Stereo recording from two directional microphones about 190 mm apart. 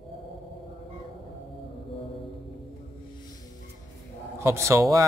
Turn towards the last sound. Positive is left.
turn(degrees=-15)  # may be behind; listen again after turning